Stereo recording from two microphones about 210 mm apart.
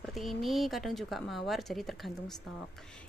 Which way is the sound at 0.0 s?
Centre (ahead or behind).